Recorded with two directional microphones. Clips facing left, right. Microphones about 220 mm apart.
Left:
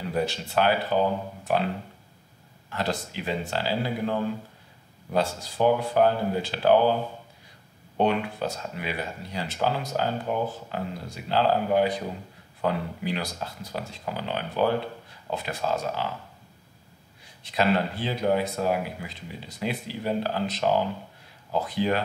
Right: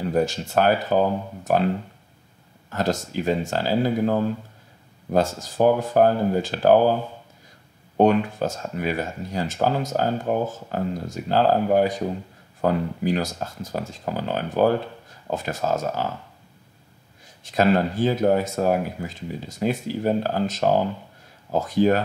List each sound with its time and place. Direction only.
0.0 s speech: 45° right (ahead or behind)
2.7 s speech: 45° right (ahead or behind)
8.0 s speech: 45° right (ahead or behind)
17.4 s speech: 45° right (ahead or behind)